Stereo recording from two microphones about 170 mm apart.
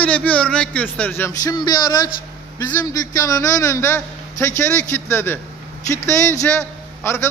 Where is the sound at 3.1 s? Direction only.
20° left (ahead or behind).